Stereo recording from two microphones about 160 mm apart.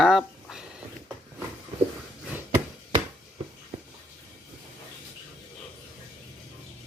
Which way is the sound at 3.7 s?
40° right (ahead or behind).